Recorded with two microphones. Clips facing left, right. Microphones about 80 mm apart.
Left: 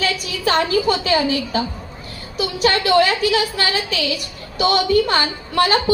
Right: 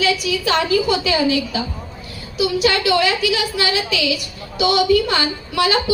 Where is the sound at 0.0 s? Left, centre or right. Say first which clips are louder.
Right 2 dB; left.